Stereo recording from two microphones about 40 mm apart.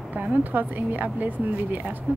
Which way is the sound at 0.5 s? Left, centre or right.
Right.